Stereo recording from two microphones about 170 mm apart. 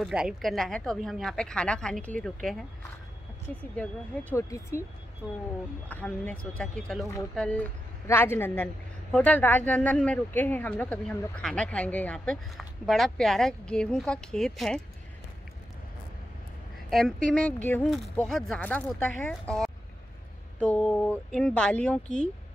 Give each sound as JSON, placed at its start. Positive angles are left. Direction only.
{"t": 0.0, "sound": "speech", "side_deg": -5}
{"t": 3.7, "sound": "speech", "side_deg": 10}
{"t": 5.9, "sound": "speech", "side_deg": 10}
{"t": 17.3, "sound": "speech", "side_deg": 10}